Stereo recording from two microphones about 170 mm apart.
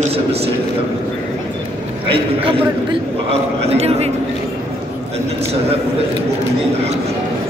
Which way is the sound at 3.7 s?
35° right (ahead or behind).